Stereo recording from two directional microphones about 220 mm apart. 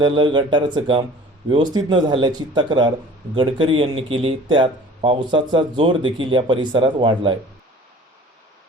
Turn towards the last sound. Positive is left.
turn(degrees=-20)  # may be behind; listen again after turning